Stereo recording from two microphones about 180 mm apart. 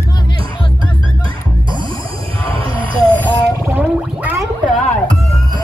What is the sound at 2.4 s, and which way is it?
Music, 30° right (ahead or behind).